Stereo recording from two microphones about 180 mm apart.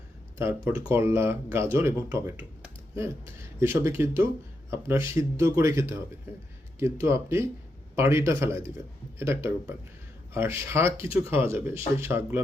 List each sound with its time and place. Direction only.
0.3 s speech: 10° right (ahead or behind)
3.6 s speech: 15° right (ahead or behind)